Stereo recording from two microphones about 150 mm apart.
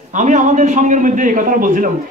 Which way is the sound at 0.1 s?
55° right (ahead or behind).